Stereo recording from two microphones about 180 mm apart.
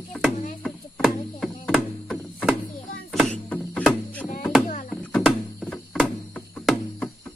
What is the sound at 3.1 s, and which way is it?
Music, 5° left (ahead or behind).